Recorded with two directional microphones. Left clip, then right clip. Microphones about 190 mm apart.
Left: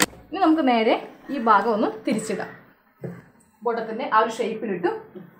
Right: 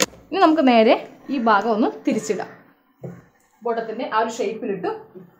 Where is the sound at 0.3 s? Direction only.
50° right (ahead or behind).